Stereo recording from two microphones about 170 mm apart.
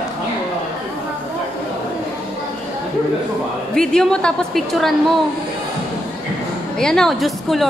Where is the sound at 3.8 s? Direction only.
5° left (ahead or behind).